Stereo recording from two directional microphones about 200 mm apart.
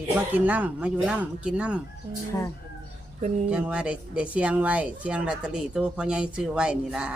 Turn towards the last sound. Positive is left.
turn(degrees=-5)  # may be behind; listen again after turning